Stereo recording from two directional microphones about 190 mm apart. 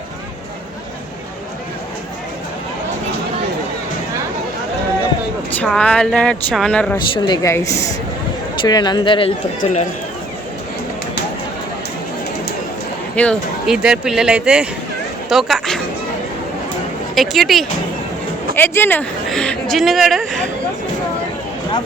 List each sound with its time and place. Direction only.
5.5 s speech: 5° left (ahead or behind)
6.9 s speech: 15° left (ahead or behind)
13.1 s speech: centre (ahead or behind)
17.2 s speech: centre (ahead or behind)
18.5 s speech: 10° left (ahead or behind)